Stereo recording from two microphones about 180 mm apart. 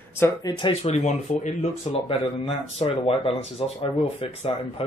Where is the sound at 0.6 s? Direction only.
35° left (ahead or behind).